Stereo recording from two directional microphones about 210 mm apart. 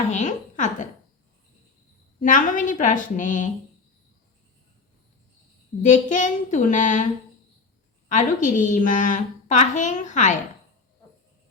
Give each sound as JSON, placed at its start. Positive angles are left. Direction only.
{"t": 0.1, "sound": "a woman's voice", "side_deg": 35}
{"t": 2.2, "sound": "a woman's voice", "side_deg": 40}
{"t": 5.8, "sound": "a woman's voice", "side_deg": 35}
{"t": 8.1, "sound": "a woman's voice", "side_deg": 40}